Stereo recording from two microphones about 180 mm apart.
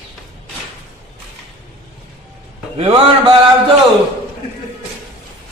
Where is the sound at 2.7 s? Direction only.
30° right (ahead or behind).